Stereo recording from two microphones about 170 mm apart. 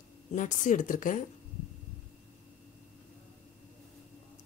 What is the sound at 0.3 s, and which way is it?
Speech, 50° left (ahead or behind).